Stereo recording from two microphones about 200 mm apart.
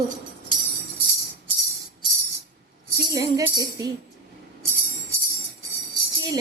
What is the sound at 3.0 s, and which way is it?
Music, 20° right (ahead or behind).